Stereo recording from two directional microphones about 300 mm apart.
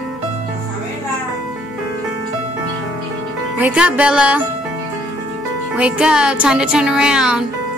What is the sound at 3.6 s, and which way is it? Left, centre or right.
Speech, centre.